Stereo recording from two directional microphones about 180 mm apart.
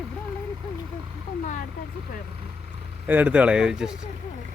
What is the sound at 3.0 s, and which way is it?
Speech, 10° right (ahead or behind).